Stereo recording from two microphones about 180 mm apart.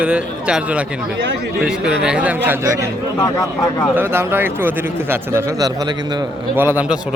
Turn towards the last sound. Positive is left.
turn(degrees=-5)  # may be behind; listen again after turning